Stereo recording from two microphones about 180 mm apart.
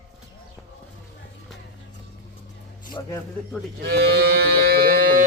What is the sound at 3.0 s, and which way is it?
Speech, 20° left (ahead or behind).